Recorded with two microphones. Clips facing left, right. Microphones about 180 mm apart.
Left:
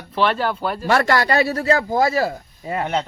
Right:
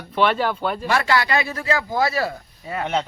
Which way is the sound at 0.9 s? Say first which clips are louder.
Left 4 dB; 45° left (ahead or behind).